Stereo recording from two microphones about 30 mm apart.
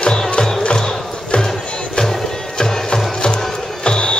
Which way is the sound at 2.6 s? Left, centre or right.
Left.